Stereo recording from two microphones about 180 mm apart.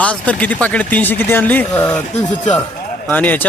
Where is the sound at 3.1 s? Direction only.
10° left (ahead or behind).